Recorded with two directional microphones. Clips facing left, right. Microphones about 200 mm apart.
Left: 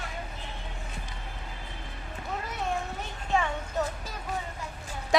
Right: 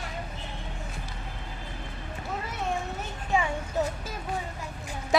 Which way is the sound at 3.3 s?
10° right (ahead or behind).